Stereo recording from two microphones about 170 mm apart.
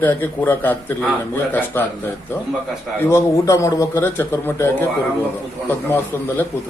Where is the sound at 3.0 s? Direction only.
15° left (ahead or behind).